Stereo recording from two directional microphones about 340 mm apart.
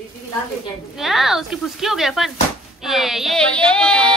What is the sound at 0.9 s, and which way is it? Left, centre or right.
Speech, centre.